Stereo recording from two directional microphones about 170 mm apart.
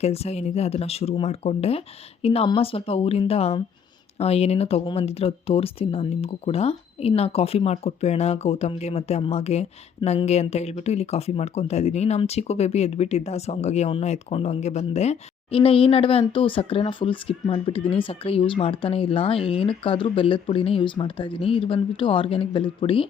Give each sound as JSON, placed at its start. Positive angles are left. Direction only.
{"t": 0.0, "sound": "speech", "side_deg": 40}